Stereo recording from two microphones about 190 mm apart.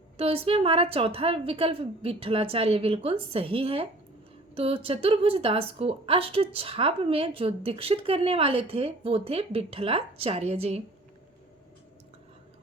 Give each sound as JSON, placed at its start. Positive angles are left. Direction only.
{"t": 0.2, "sound": "a woman's voice", "side_deg": -30}